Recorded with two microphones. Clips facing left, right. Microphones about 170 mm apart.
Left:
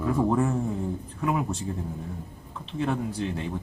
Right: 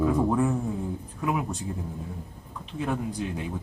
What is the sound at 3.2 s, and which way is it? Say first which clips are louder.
Speech: left 1 dB; 5° right (ahead or behind).